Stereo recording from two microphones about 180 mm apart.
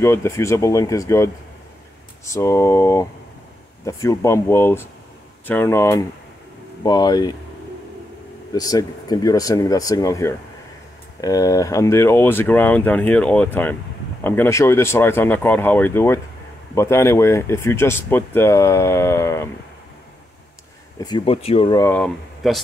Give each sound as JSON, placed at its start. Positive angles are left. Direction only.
{"t": 0.0, "sound": "speech", "side_deg": 15}
{"t": 8.5, "sound": "speech", "side_deg": 20}
{"t": 21.0, "sound": "speech", "side_deg": 30}
{"t": 21.7, "sound": "speech", "side_deg": 10}